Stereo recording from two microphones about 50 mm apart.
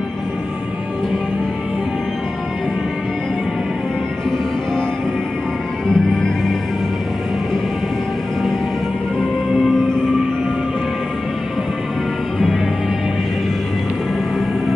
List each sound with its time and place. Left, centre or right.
5.9 s music: centre